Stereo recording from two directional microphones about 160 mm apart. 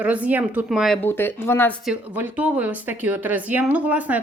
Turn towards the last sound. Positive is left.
turn(degrees=-10)  # may be behind; listen again after turning